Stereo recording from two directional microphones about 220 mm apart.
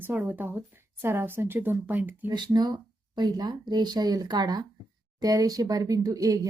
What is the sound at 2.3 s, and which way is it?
Speech, 20° right (ahead or behind).